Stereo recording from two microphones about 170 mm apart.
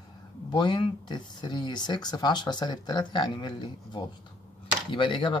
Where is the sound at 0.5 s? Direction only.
25° left (ahead or behind).